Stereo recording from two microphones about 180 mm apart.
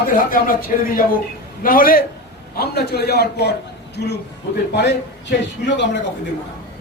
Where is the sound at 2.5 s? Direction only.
65° left (ahead or behind).